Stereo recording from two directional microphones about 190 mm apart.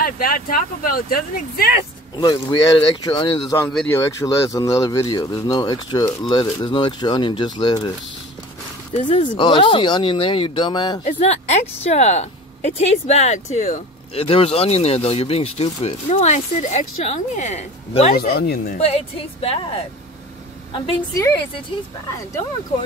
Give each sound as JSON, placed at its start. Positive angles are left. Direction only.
{"t": 0.0, "sound": "speech", "side_deg": 50}
{"t": 2.1, "sound": "speech", "side_deg": 25}
{"t": 3.5, "sound": "speech", "side_deg": 5}
{"t": 3.9, "sound": "speech", "side_deg": 15}
{"t": 8.9, "sound": "speech", "side_deg": 40}
{"t": 9.4, "sound": "speech", "side_deg": 25}
{"t": 11.1, "sound": "speech", "side_deg": 35}
{"t": 18.1, "sound": "speech", "side_deg": 55}
{"t": 18.8, "sound": "speech", "side_deg": 35}